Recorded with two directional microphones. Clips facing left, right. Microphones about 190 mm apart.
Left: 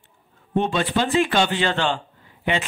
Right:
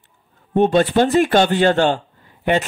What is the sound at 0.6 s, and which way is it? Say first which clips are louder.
Speech: right 7 dB; 50° right (ahead or behind).